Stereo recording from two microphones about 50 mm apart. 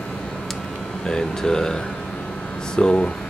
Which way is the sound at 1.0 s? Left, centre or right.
Centre.